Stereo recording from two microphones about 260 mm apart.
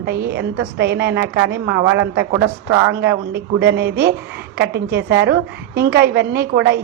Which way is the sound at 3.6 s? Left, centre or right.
Right.